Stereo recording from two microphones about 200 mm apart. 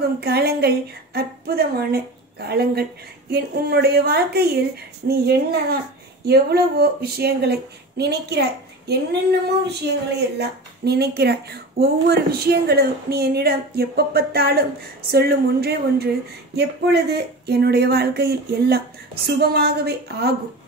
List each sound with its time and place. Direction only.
0.2 s speech: 50° right (ahead or behind)